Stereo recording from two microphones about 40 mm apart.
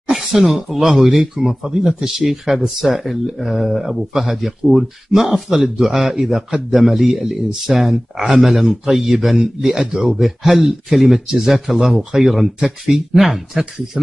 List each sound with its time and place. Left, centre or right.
0.1 s a man's voice: centre